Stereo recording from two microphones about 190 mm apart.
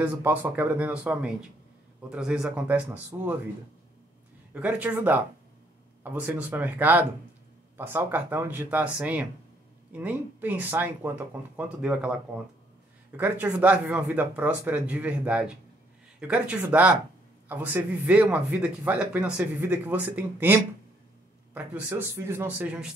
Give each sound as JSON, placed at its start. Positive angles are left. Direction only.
{"t": 0.0, "sound": "speech", "side_deg": -10}
{"t": 4.6, "sound": "speech", "side_deg": -5}
{"t": 13.1, "sound": "speech", "side_deg": -10}